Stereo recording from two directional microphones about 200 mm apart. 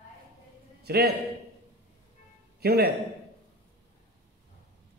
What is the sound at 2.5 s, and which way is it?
Speech, 55° right (ahead or behind).